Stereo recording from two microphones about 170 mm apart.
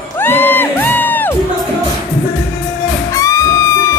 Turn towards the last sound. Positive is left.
turn(degrees=20)  # may be behind; listen again after turning